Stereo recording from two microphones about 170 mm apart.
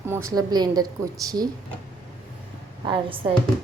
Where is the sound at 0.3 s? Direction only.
25° right (ahead or behind).